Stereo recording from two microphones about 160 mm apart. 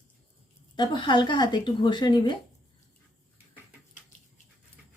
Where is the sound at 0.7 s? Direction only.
30° left (ahead or behind).